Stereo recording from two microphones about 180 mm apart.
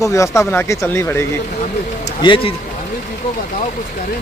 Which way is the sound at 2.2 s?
30° left (ahead or behind).